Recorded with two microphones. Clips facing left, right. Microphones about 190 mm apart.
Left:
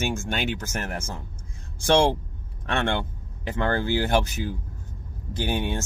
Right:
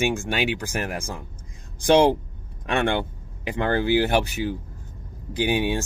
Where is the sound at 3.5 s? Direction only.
15° right (ahead or behind).